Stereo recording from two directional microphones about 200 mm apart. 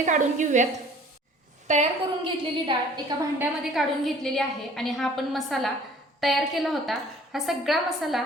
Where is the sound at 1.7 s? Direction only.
30° right (ahead or behind).